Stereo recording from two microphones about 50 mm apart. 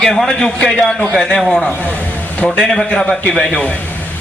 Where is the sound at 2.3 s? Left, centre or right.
Left.